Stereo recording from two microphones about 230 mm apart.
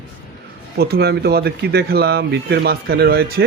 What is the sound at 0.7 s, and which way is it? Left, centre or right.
Speech, right.